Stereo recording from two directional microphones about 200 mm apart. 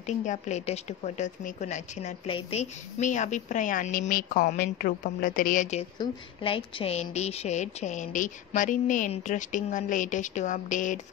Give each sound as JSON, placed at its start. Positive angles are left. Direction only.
{"t": 0.0, "sound": "a woman's voice", "side_deg": 35}